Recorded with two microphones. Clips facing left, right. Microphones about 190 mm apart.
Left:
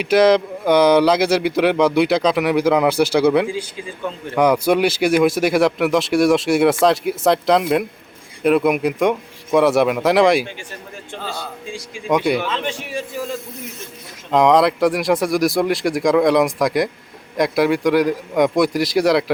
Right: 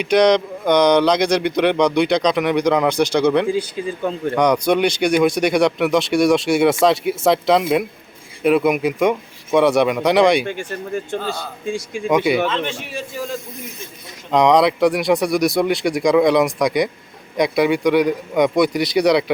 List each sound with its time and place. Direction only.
0.0 s speech: 5° left (ahead or behind)
3.5 s speech: 40° right (ahead or behind)
4.4 s speech: 5° left (ahead or behind)
10.4 s speech: 55° right (ahead or behind)
12.0 s speech: centre (ahead or behind)